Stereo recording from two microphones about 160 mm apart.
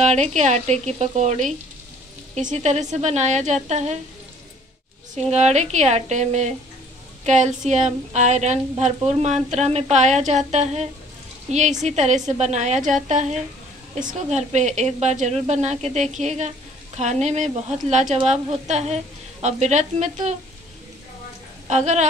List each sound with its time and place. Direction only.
0.0 s a woman's voice: 45° right (ahead or behind)
5.1 s a woman's voice: 45° right (ahead or behind)
21.6 s a woman's voice: 45° right (ahead or behind)